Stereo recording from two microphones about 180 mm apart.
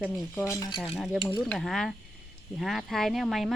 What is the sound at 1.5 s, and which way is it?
Speech, centre (ahead or behind).